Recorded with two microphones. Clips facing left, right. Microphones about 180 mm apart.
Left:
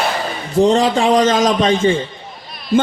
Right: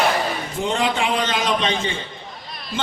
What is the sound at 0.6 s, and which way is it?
A man's voice, 40° left (ahead or behind).